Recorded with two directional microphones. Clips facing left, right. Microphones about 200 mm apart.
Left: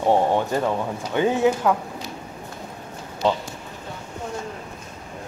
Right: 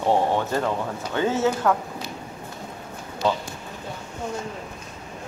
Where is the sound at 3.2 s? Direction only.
20° left (ahead or behind).